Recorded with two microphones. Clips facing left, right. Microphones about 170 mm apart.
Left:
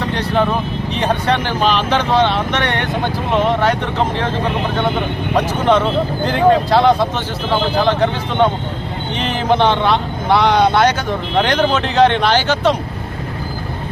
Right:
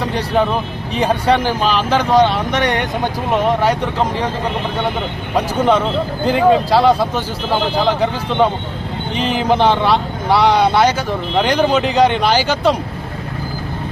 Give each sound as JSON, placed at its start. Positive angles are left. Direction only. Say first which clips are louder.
{"t": 0.0, "sound": "speech", "louder": "even", "side_deg": -10}
{"t": 5.4, "sound": "speech", "louder": "even", "side_deg": -10}